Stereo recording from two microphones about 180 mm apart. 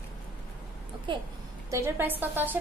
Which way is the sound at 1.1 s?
25° right (ahead or behind).